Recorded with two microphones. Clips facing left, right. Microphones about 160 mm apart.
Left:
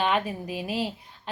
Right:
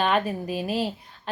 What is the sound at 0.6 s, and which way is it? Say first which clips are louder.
Speech: right 2 dB; 15° left (ahead or behind).